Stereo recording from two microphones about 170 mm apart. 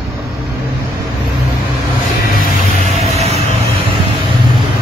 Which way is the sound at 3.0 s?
40° right (ahead or behind).